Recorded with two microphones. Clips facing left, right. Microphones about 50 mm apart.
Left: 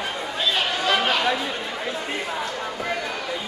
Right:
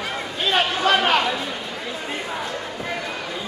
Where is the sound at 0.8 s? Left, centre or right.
Right.